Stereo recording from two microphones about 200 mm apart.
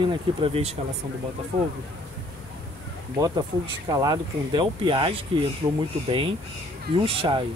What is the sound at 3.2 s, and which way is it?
Speech, 20° right (ahead or behind).